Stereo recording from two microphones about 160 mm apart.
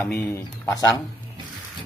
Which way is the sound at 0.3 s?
20° left (ahead or behind).